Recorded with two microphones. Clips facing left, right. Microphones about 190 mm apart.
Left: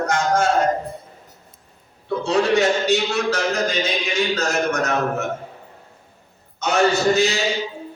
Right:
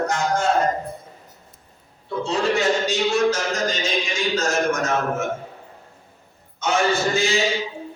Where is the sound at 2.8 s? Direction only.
65° left (ahead or behind).